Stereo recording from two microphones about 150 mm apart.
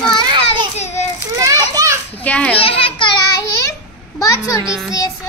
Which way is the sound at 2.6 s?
40° left (ahead or behind).